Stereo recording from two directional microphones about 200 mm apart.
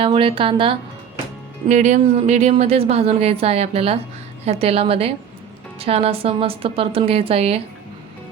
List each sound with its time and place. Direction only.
0.0 s a woman's voice: 25° right (ahead or behind)
1.6 s a woman's voice: 35° right (ahead or behind)